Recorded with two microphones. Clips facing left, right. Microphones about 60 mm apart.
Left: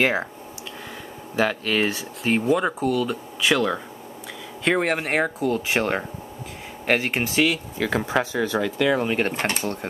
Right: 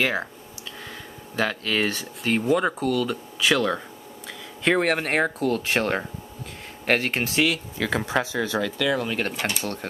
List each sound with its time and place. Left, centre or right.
0.0 s speech: left
1.3 s speech: centre
8.7 s speech: left
9.3 s speech: left
9.6 s speech: left